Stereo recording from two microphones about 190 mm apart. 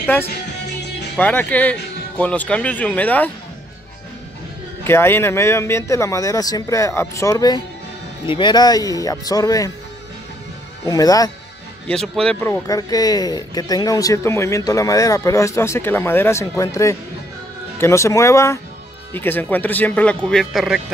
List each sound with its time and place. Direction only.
0.0 s speech: 10° left (ahead or behind)
4.8 s speech: 10° left (ahead or behind)
10.9 s speech: 20° left (ahead or behind)
11.9 s speech: 5° left (ahead or behind)